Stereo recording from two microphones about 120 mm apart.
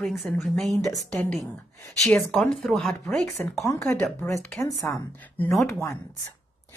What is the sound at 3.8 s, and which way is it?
Speech, 15° left (ahead or behind).